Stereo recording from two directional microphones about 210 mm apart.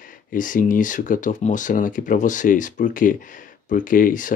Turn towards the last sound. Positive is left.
turn(degrees=40)  # may be behind; listen again after turning